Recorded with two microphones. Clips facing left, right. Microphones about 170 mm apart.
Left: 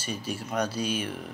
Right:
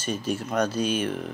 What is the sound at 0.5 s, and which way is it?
Speech, 10° left (ahead or behind).